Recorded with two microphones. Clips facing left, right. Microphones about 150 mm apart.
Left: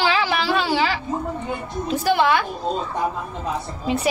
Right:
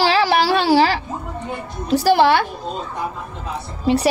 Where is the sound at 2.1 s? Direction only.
35° right (ahead or behind).